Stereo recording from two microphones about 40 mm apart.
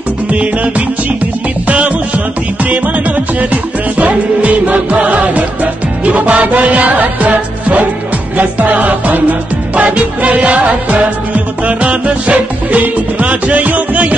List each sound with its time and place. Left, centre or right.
0.3 s music: right
4.0 s music: right